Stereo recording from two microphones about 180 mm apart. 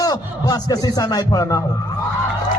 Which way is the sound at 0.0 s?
20° left (ahead or behind).